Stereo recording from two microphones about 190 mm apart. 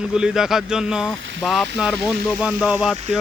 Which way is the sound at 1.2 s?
75° right (ahead or behind).